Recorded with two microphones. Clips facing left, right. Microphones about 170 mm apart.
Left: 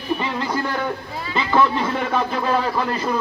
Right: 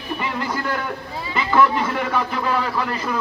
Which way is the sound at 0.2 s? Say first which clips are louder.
Left 2 dB; 20° left (ahead or behind).